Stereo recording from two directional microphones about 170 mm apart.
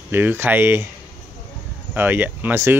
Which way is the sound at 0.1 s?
10° right (ahead or behind).